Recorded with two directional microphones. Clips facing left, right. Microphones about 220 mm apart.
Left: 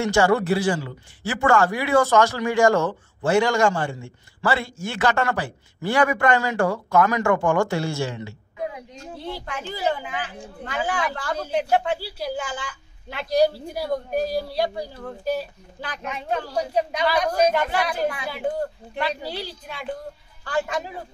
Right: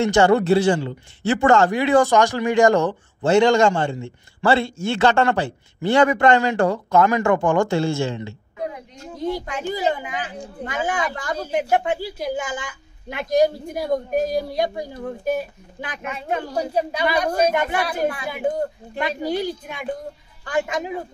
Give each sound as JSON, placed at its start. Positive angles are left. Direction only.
{"t": 0.0, "sound": "a man's voice", "side_deg": -20}
{"t": 16.0, "sound": "speech", "side_deg": -5}